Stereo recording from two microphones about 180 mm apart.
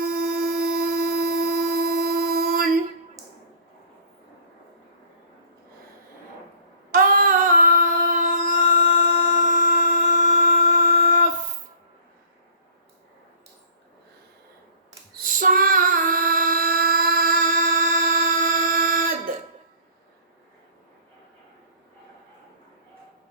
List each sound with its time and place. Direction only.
0.0 s a sound: 55° right (ahead or behind)
6.9 s singing: 50° right (ahead or behind)
15.2 s female singing: 50° right (ahead or behind)